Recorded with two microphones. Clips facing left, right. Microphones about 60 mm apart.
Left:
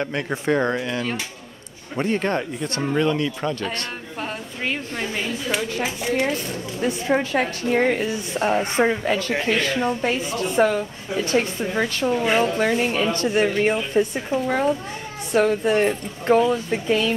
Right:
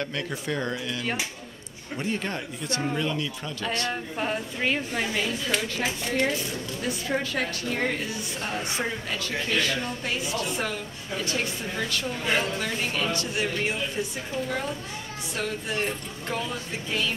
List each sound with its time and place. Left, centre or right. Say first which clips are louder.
0.0 s a woman's voice: left 6 dB; left
2.0 s a woman's voice: left 8 dB; left
4.2 s a woman's voice: even; centre
6.0 s speech: left 4 dB; centre
6.3 s a woman's voice: left 3 dB; left
9.3 s a woman's voice: left 5 dB; left